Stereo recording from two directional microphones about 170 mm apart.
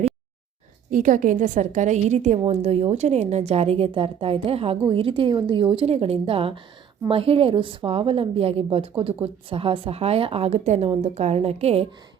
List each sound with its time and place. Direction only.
0.9 s a woman's voice: 50° right (ahead or behind)